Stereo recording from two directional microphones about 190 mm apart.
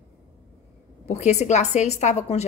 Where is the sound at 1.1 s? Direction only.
35° left (ahead or behind).